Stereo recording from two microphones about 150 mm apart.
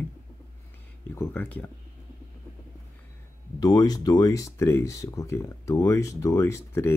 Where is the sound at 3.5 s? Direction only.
25° left (ahead or behind).